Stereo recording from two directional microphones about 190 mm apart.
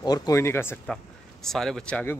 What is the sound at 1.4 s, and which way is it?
Speech, centre (ahead or behind).